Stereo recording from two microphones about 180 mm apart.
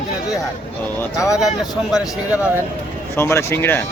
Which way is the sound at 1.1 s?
5° right (ahead or behind).